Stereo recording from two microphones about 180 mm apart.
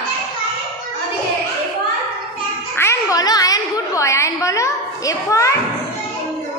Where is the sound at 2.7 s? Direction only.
15° left (ahead or behind).